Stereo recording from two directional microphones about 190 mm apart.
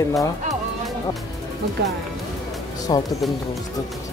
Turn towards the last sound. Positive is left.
turn(degrees=20)  # may be behind; listen again after turning